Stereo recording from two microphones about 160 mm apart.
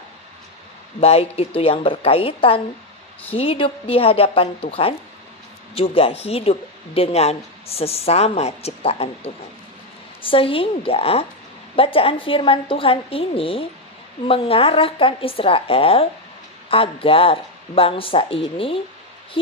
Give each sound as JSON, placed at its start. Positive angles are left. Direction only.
{"t": 1.0, "sound": "a woman's voice", "side_deg": 40}